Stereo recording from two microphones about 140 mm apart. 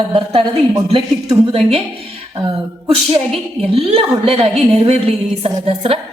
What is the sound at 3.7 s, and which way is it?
A woman's voice, 45° right (ahead or behind).